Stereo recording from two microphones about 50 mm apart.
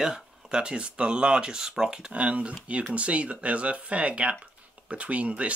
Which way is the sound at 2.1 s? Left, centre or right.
Right.